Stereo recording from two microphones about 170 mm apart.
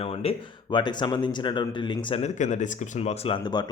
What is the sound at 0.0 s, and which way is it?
A man's voice, 35° left (ahead or behind).